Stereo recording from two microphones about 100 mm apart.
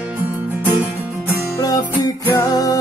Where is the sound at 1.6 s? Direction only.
40° left (ahead or behind).